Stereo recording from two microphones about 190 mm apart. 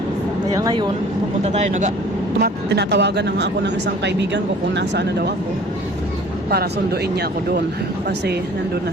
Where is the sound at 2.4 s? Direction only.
65° right (ahead or behind).